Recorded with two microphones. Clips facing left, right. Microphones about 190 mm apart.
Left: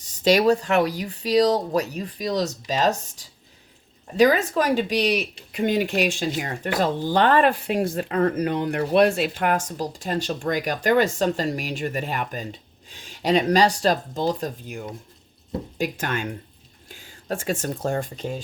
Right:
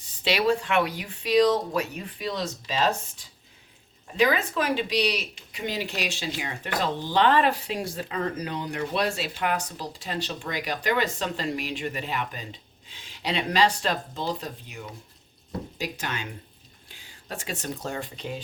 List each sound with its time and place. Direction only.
0.0 s speech: 45° left (ahead or behind)
4.2 s speech: 40° left (ahead or behind)